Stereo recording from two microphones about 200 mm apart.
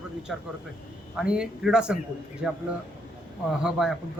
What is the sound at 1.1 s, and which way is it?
A man's voice, 5° right (ahead or behind).